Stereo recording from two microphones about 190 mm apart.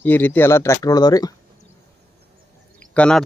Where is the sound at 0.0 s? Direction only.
10° left (ahead or behind).